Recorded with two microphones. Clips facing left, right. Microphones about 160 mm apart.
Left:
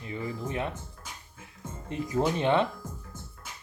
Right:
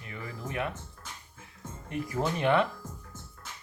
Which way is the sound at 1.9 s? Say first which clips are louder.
Left 3 dB; 20° left (ahead or behind).